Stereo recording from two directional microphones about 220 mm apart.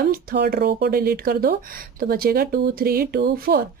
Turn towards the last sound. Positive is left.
turn(degrees=-45)  # may be behind; listen again after turning